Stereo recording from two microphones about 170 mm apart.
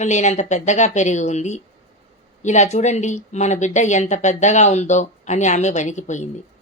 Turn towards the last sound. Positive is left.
turn(degrees=45)  # may be behind; listen again after turning